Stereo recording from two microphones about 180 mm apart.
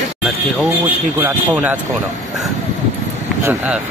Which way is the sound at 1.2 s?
10° right (ahead or behind).